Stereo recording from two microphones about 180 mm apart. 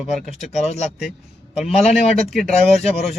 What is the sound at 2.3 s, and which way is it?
Speech, centre (ahead or behind).